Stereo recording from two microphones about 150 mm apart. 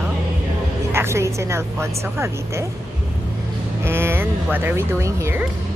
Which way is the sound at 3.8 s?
15° right (ahead or behind).